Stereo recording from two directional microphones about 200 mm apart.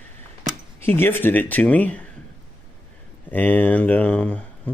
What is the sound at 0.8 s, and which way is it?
Speech, 10° left (ahead or behind).